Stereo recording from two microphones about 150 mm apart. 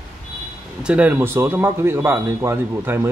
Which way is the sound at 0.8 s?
10° right (ahead or behind).